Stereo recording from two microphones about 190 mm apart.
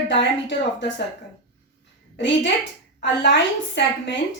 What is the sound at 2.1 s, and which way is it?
Speech, 70° left (ahead or behind).